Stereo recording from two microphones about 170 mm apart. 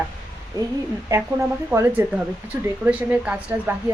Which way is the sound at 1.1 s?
15° right (ahead or behind).